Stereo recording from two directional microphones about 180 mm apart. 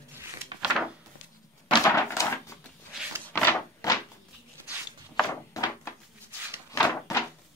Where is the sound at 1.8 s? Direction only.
15° left (ahead or behind).